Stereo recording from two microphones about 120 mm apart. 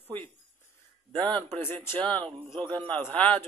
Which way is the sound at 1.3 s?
15° left (ahead or behind).